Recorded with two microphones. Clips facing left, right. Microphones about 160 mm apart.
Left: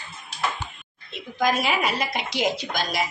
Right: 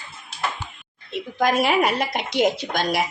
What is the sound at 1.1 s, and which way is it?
Speech, 60° right (ahead or behind).